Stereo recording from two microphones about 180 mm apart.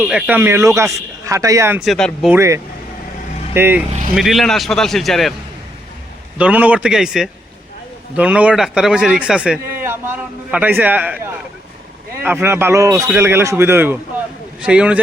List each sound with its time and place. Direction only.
0.0 s a man's voice: 5° right (ahead or behind)
1.8 s a man's voice: centre (ahead or behind)
2.3 s a man's voice: 15° right (ahead or behind)
4.1 s a man's voice: centre (ahead or behind)
6.4 s a man's voice: 10° right (ahead or behind)